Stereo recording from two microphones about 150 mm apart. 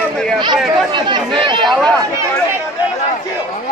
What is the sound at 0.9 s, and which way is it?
Speech, 30° right (ahead or behind).